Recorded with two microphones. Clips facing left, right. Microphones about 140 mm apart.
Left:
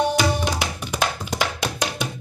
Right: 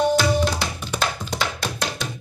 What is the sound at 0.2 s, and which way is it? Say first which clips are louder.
Tabla: right 1 dB; 10° left (ahead or behind).